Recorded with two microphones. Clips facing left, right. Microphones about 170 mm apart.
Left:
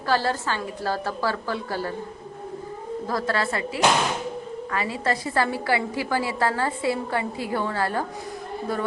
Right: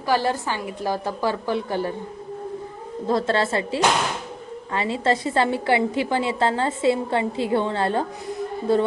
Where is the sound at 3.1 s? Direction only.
25° right (ahead or behind).